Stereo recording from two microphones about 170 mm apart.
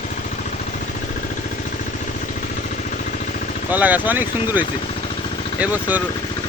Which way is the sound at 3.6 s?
10° right (ahead or behind).